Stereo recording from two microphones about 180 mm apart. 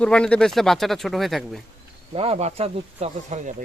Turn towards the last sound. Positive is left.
turn(degrees=-35)  # may be behind; listen again after turning